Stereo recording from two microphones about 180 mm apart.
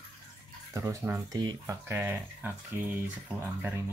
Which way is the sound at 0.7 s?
15° right (ahead or behind).